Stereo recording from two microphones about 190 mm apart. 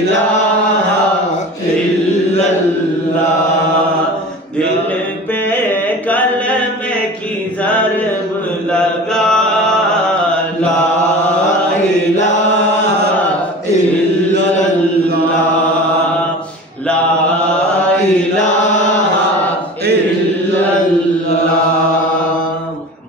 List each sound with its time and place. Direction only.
8.7 s mantra: 5° left (ahead or behind)
18.4 s chant: 40° left (ahead or behind)